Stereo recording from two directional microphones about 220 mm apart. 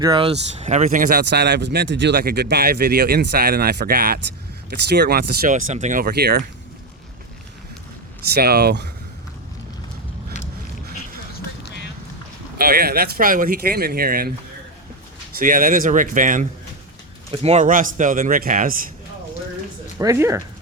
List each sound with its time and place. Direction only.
0.0 s speech: 20° right (ahead or behind); by 6.5 s 45° right (ahead or behind)
8.3 s speech: 45° right (ahead or behind)
12.5 s speech: 45° right (ahead or behind)
15.4 s a man's voice: 40° right (ahead or behind)
20.0 s speech: 15° right (ahead or behind)